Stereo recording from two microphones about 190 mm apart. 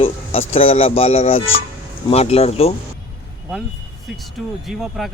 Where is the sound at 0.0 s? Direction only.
30° left (ahead or behind).